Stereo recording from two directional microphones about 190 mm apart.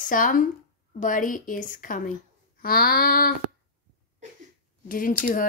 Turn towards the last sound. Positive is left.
turn(degrees=45)  # may be behind; listen again after turning